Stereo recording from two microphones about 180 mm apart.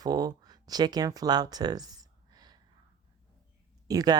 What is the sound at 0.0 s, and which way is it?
Speech, 20° right (ahead or behind).